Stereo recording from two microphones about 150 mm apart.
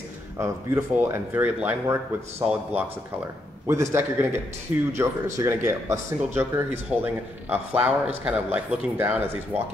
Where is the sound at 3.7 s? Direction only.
15° right (ahead or behind).